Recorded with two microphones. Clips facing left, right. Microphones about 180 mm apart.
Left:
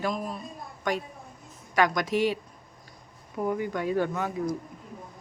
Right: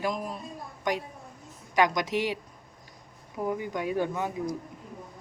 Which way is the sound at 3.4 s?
15° right (ahead or behind).